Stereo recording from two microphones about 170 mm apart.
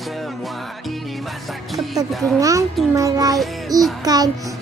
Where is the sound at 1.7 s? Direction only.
Centre (ahead or behind).